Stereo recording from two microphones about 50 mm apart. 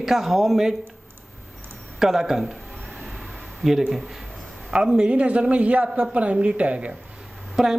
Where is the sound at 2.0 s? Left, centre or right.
Centre.